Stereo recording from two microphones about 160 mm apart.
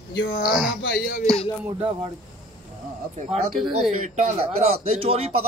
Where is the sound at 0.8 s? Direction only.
75° left (ahead or behind).